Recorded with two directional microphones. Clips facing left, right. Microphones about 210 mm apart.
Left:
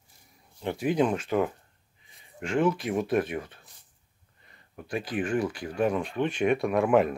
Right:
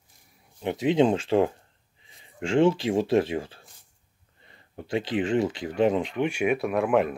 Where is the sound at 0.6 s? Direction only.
20° right (ahead or behind).